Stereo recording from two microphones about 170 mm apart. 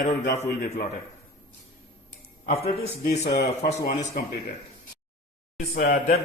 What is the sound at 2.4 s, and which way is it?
Speech, 40° left (ahead or behind).